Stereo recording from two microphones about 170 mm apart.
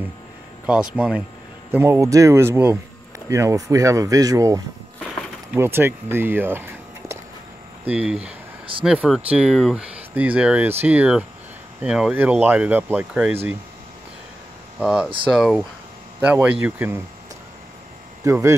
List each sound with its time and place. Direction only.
0.7 s speech: 5° right (ahead or behind)
14.8 s speech: 5° right (ahead or behind)
18.2 s speech: 15° right (ahead or behind)